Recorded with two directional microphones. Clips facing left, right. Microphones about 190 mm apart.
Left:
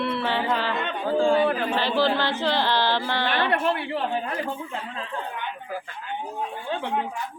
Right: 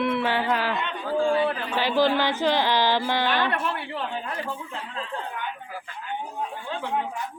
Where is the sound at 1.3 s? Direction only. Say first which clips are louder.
Left 3 dB; 50° left (ahead or behind).